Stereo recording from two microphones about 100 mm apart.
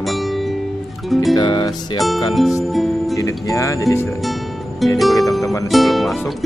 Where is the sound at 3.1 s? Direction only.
35° left (ahead or behind).